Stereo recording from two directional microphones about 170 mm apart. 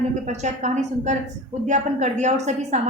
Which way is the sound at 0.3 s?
45° right (ahead or behind).